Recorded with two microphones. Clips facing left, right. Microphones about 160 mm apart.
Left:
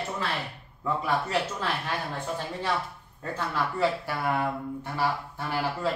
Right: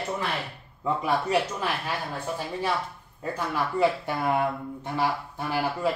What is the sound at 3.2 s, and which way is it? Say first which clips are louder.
Speech: right 1 dB; 15° right (ahead or behind).